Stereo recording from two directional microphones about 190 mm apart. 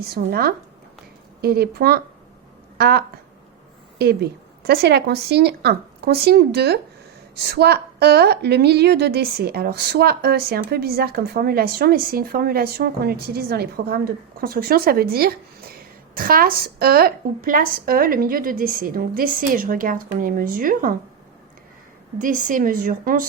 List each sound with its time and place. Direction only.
0.0 s a woman's voice: 55° right (ahead or behind)
22.2 s a woman's voice: 45° right (ahead or behind)